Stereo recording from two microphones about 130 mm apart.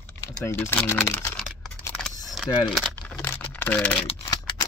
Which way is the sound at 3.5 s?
10° left (ahead or behind).